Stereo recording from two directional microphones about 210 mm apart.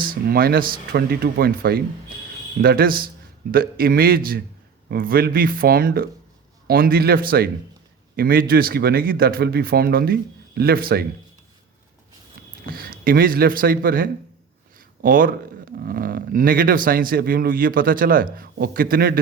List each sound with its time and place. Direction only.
0.0 s speech: 45° right (ahead or behind)
12.6 s speech: 45° right (ahead or behind)